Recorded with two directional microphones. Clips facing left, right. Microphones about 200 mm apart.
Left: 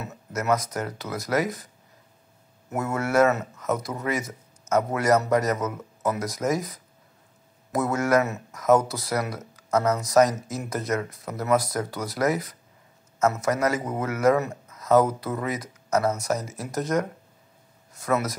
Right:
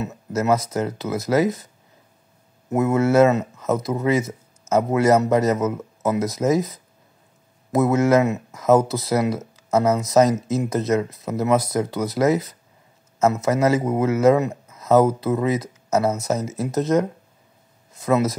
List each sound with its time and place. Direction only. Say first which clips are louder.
0.0 s speech: right 7 dB; 30° right (ahead or behind)
2.7 s speech: right 7 dB; 20° right (ahead or behind)